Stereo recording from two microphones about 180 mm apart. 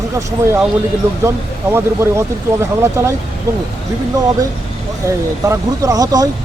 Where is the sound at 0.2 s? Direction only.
15° right (ahead or behind).